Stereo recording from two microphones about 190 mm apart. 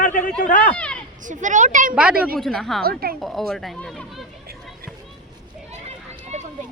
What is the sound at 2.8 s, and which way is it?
Speech, 55° right (ahead or behind).